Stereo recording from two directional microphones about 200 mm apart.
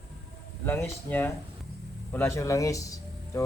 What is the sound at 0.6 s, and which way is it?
Speech, 10° left (ahead or behind).